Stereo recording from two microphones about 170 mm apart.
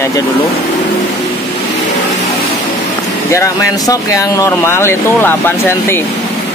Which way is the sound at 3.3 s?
20° left (ahead or behind).